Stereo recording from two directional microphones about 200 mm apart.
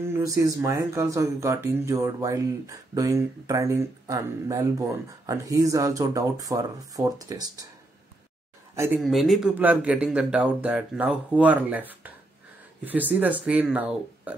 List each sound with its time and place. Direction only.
0.0 s speech: 15° right (ahead or behind)
8.7 s speech: 10° right (ahead or behind)
9.0 s speech: centre (ahead or behind)